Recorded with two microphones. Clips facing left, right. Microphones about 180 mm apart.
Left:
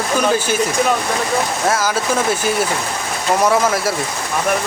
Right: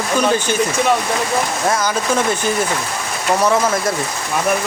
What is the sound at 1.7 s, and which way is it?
Speech, 5° left (ahead or behind).